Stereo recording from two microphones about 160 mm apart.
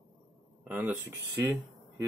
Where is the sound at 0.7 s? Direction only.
10° right (ahead or behind).